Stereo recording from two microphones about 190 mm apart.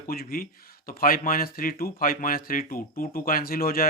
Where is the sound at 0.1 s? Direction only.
50° left (ahead or behind).